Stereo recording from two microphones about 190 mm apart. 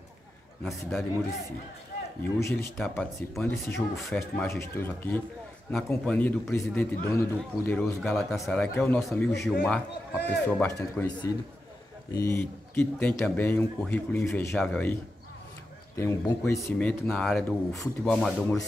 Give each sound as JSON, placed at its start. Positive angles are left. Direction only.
{"t": 0.7, "sound": "a man's voice", "side_deg": 5}
{"t": 2.2, "sound": "a man's voice", "side_deg": 10}
{"t": 16.0, "sound": "speech", "side_deg": 15}
{"t": 16.7, "sound": "a man's voice", "side_deg": 5}